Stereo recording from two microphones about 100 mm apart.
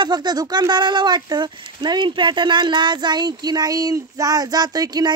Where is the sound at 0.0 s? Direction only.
45° right (ahead or behind).